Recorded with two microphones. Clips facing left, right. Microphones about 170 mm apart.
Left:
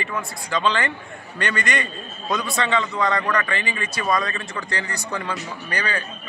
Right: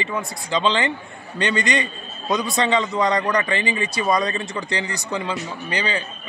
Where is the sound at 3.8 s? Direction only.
15° right (ahead or behind).